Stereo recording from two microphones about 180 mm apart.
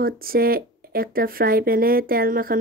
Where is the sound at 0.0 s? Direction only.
55° right (ahead or behind).